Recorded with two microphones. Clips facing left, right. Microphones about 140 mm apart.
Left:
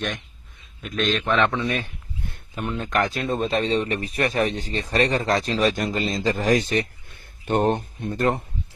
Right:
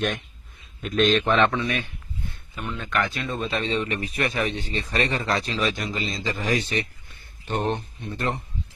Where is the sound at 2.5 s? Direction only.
45° left (ahead or behind).